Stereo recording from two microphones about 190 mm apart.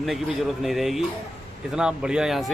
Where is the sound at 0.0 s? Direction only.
Centre (ahead or behind).